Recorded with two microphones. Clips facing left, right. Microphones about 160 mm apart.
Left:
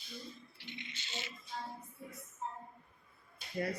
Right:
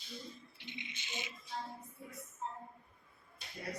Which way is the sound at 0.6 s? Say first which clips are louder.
Even; 20° right (ahead or behind).